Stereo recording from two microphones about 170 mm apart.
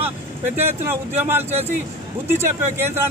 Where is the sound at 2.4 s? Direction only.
15° right (ahead or behind).